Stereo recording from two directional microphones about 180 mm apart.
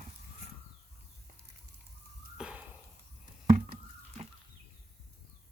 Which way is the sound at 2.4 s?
5° right (ahead or behind).